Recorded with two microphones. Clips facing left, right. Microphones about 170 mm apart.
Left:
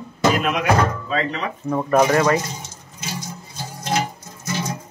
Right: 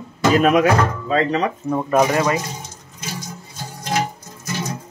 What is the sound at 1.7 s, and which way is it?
Speech, 15° right (ahead or behind).